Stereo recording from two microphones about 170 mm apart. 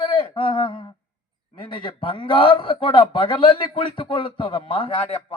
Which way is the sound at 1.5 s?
30° left (ahead or behind).